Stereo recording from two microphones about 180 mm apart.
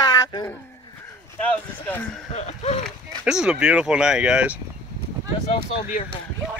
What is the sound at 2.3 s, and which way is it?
Speech, 35° left (ahead or behind).